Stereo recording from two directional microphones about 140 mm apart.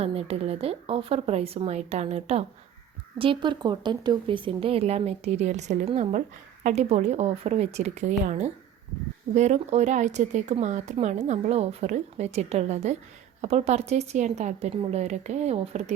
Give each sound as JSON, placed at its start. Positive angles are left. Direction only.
{"t": 0.0, "sound": "speech", "side_deg": -45}
{"t": 3.2, "sound": "speech", "side_deg": -35}
{"t": 6.1, "sound": "speech", "side_deg": -60}